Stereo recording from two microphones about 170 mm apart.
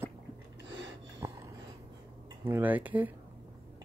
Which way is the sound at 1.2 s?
20° right (ahead or behind).